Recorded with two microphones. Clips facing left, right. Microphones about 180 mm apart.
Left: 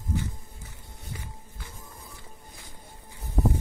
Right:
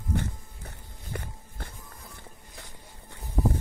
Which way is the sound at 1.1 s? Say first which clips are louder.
Right 4 dB; 65° right (ahead or behind).